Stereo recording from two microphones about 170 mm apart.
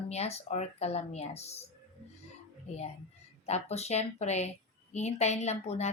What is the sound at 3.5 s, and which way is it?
A woman's voice, 40° left (ahead or behind).